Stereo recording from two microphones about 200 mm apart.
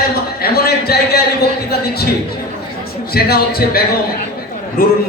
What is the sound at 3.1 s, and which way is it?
A man's voice, 50° left (ahead or behind).